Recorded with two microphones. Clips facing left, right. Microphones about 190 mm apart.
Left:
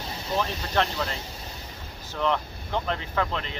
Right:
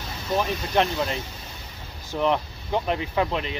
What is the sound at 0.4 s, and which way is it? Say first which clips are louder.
Speech: right 3 dB; 15° right (ahead or behind).